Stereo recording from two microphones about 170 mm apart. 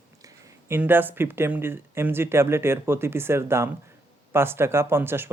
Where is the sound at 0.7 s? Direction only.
10° right (ahead or behind).